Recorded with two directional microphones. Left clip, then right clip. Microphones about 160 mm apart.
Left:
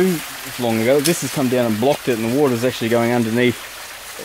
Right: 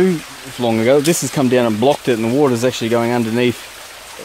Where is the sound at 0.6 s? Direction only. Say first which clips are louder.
Right 3 dB; 25° right (ahead or behind).